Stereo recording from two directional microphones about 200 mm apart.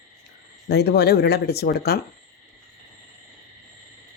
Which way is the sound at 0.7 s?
55° left (ahead or behind).